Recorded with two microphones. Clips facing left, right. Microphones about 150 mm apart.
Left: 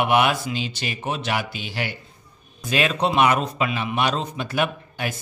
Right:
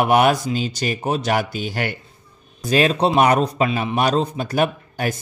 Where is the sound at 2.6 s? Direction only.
35° right (ahead or behind).